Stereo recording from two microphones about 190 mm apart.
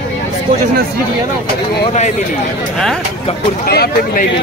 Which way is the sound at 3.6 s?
55° left (ahead or behind).